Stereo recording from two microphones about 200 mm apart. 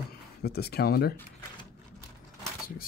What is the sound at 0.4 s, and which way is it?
Speech, 50° left (ahead or behind).